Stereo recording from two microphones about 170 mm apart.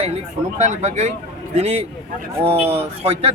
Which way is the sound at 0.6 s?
45° right (ahead or behind).